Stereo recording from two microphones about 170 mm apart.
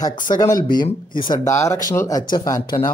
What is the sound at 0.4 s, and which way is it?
Speech, 20° left (ahead or behind).